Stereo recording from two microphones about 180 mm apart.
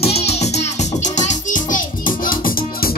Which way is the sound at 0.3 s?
35° left (ahead or behind).